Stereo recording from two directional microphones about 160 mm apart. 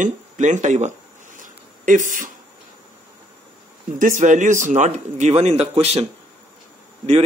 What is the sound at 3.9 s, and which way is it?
Speech, 55° right (ahead or behind).